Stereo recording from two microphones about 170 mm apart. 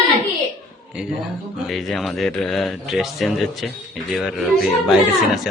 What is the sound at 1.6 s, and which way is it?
Speech, centre (ahead or behind).